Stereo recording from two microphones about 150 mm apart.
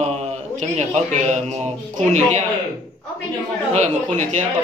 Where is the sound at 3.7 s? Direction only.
50° right (ahead or behind).